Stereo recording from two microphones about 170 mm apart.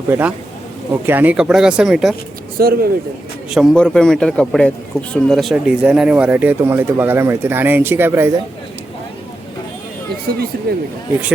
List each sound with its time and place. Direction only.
0.1 s a man's voice: 10° right (ahead or behind)
2.6 s speech: 60° right (ahead or behind)
3.5 s a man's voice: centre (ahead or behind)
10.7 s speech: 65° right (ahead or behind)